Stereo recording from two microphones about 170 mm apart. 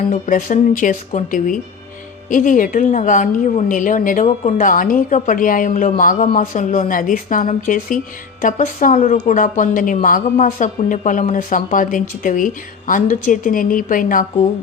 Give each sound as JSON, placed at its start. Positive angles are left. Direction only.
{"t": 0.1, "sound": "a woman's voice", "side_deg": 50}